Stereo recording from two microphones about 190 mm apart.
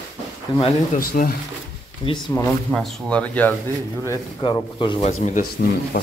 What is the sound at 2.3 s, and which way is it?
Speech, 20° left (ahead or behind).